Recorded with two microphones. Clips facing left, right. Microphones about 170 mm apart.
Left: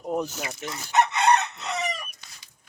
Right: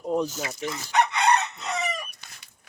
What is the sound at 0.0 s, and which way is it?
Dog, 5° left (ahead or behind).